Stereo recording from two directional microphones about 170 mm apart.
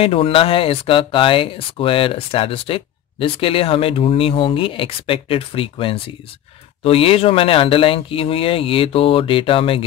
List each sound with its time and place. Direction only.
0.0 s speech: 35° left (ahead or behind)